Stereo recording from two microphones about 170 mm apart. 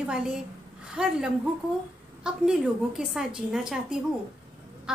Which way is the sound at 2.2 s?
5° right (ahead or behind).